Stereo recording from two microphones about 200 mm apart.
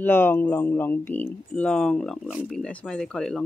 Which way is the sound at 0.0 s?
10° left (ahead or behind).